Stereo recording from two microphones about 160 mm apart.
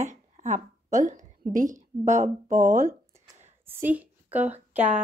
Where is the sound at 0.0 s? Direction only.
50° right (ahead or behind).